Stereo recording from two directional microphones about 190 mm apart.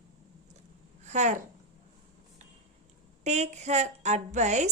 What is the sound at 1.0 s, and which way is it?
Speech, 35° right (ahead or behind).